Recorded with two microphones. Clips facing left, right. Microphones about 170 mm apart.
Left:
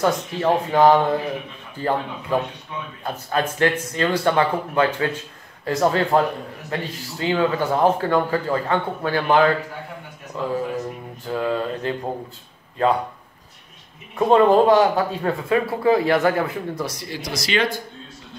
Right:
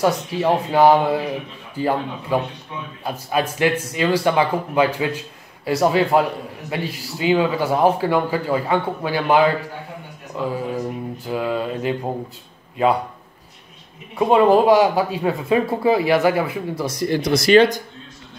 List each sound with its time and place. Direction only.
0.0 s a man's voice: 10° right (ahead or behind)
14.1 s a man's voice: 10° right (ahead or behind)
17.0 s speech: 55° right (ahead or behind)